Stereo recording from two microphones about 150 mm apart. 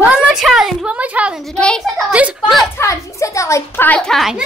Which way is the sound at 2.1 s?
10° right (ahead or behind).